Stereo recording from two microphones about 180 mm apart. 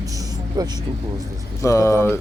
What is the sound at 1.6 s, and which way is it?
Speech, 15° left (ahead or behind).